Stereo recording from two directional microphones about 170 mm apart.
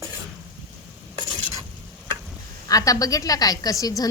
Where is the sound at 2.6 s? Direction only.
20° left (ahead or behind).